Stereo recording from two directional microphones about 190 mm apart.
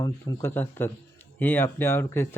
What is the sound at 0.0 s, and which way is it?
Speech, 10° left (ahead or behind).